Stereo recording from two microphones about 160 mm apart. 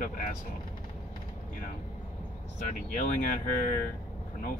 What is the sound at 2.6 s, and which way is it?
Speech, 50° left (ahead or behind).